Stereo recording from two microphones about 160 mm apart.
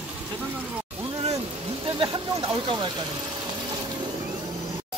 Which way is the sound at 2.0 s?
30° right (ahead or behind).